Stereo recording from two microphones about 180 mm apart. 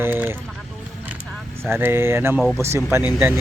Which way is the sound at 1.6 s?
15° right (ahead or behind).